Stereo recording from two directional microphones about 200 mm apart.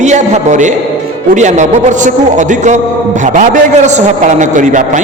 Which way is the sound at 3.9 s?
35° right (ahead or behind).